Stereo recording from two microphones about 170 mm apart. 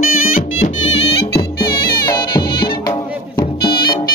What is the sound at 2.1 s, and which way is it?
Music, 25° left (ahead or behind).